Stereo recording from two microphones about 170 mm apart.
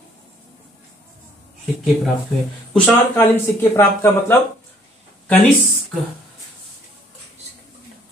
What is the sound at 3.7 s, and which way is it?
Speech, 15° left (ahead or behind).